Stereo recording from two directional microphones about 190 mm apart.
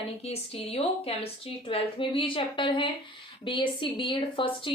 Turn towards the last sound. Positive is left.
turn(degrees=25)  # may be behind; listen again after turning